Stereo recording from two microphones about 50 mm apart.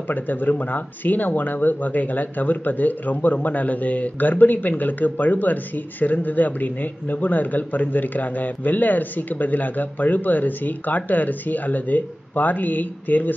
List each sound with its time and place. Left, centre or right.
0.1 s speech: left